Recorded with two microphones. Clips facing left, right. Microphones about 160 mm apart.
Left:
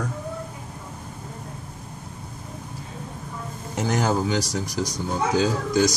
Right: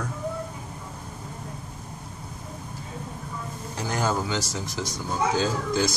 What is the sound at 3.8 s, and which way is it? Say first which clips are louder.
Speech: left 4 dB; 20° left (ahead or behind).